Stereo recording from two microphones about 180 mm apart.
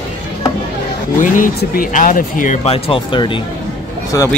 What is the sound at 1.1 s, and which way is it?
Speech, 45° left (ahead or behind).